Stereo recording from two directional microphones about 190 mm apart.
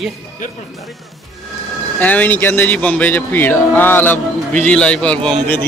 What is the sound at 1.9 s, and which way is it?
Speech, 10° left (ahead or behind).